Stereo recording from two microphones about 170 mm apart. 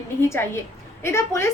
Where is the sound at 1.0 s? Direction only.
15° left (ahead or behind).